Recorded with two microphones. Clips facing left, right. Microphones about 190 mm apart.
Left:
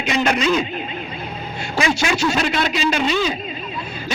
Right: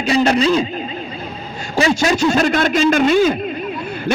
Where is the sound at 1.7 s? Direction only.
35° right (ahead or behind).